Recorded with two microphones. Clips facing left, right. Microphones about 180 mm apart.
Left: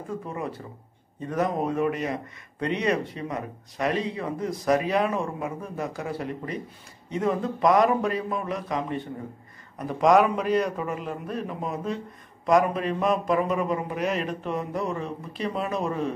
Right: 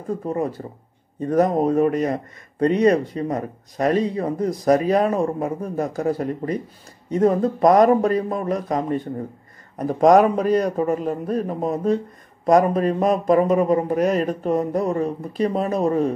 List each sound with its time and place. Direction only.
0.2 s speech: 40° right (ahead or behind)